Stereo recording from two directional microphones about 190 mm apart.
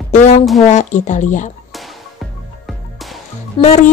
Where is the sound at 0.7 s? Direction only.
40° left (ahead or behind).